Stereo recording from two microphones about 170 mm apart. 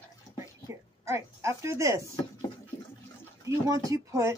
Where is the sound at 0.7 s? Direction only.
15° right (ahead or behind).